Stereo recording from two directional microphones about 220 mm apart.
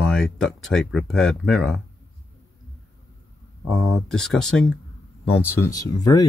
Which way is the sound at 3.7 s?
Centre (ahead or behind).